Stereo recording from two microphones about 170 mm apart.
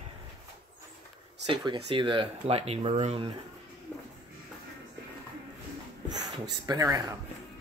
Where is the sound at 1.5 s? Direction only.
30° right (ahead or behind).